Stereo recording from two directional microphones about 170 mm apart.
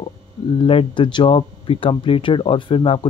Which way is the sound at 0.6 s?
30° left (ahead or behind).